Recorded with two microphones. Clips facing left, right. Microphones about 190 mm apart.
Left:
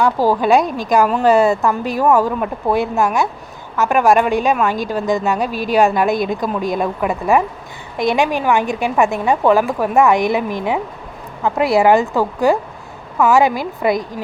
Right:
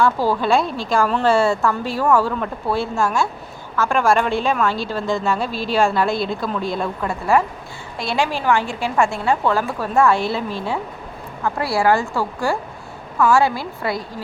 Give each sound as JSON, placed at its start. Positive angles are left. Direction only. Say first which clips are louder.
{"t": 0.3, "sound": "a woman's voice", "louder": "left 4 dB", "side_deg": 15}